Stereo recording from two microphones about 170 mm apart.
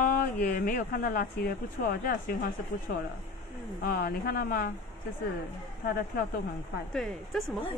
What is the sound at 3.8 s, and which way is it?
Speech, 60° left (ahead or behind).